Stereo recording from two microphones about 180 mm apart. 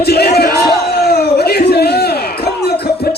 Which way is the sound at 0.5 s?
65° left (ahead or behind).